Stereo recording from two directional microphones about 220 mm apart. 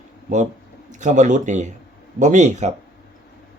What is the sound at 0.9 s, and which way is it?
Speech, 35° right (ahead or behind).